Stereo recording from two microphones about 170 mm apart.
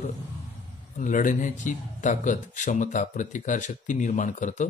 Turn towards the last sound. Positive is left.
turn(degrees=45)  # may be behind; listen again after turning